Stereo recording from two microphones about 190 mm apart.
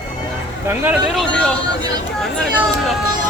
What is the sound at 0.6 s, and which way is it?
Speech, 10° right (ahead or behind).